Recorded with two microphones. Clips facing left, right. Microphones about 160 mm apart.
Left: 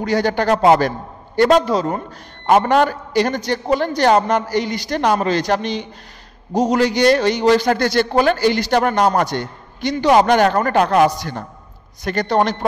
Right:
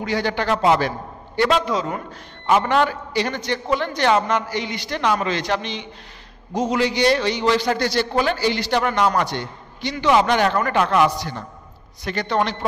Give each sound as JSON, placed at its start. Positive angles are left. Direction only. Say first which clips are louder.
{"t": 0.0, "sound": "a man's voice", "louder": "left 5 dB", "side_deg": 40}